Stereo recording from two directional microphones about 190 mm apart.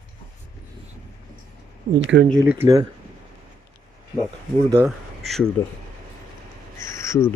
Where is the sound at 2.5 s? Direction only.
15° right (ahead or behind).